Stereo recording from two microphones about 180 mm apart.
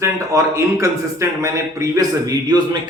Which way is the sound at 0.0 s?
15° right (ahead or behind).